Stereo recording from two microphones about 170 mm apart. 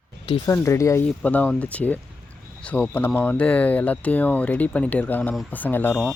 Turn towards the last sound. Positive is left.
turn(degrees=10)  # may be behind; listen again after turning